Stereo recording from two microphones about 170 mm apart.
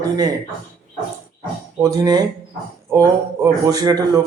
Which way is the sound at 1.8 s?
20° right (ahead or behind).